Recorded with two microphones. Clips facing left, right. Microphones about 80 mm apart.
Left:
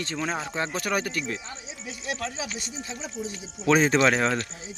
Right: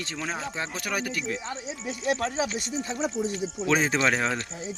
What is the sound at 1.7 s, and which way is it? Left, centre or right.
Speech, right.